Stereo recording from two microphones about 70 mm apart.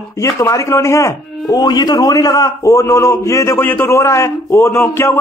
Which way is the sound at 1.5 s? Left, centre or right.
Left.